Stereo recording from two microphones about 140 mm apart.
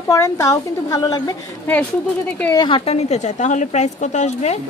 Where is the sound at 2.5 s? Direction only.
35° left (ahead or behind).